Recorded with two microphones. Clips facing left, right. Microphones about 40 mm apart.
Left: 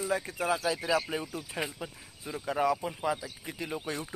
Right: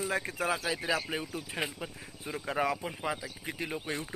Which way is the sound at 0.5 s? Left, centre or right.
Right.